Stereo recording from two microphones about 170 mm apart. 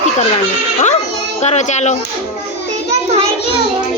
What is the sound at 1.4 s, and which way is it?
Speech, 40° left (ahead or behind).